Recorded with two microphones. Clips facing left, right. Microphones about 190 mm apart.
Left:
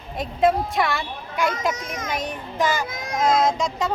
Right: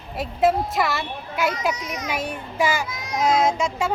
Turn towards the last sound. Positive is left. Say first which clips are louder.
# even
turn(degrees=-10)  # may be behind; listen again after turning